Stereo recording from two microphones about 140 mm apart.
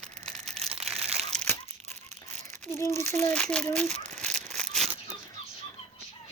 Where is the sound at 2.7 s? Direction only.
20° left (ahead or behind).